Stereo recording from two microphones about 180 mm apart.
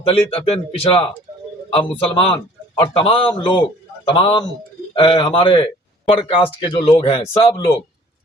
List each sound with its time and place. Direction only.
0.0 s a man's voice: 30° left (ahead or behind)